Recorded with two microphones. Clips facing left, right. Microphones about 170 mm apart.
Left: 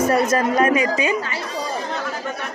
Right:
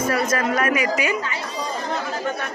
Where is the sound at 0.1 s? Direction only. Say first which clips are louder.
Left 4 dB; 30° left (ahead or behind).